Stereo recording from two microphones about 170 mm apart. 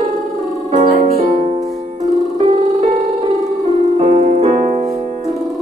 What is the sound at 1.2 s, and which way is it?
Music, 45° right (ahead or behind).